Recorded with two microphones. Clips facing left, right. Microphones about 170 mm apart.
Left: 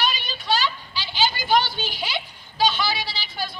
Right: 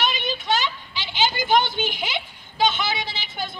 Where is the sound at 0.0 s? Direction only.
20° right (ahead or behind).